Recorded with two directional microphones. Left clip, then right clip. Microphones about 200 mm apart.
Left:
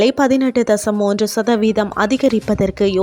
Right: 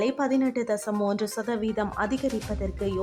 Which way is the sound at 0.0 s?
40° left (ahead or behind).